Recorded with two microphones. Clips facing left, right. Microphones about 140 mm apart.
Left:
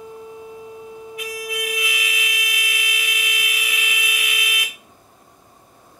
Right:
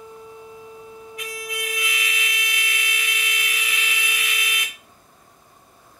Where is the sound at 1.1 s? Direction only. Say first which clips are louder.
Left 4 dB; 5° left (ahead or behind).